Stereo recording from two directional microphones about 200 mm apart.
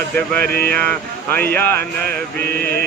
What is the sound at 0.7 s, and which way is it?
Speech, 50° right (ahead or behind).